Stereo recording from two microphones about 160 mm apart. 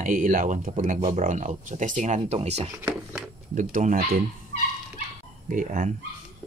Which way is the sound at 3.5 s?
55° right (ahead or behind).